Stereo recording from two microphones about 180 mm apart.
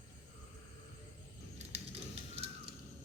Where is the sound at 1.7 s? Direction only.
35° right (ahead or behind).